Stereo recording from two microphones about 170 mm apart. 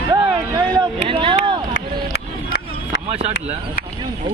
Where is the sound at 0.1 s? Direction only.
20° right (ahead or behind).